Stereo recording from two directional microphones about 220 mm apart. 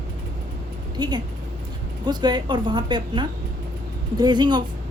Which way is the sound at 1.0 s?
20° right (ahead or behind).